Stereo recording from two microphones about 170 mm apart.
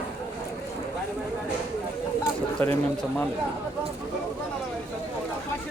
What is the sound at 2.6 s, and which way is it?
Speech, 10° left (ahead or behind).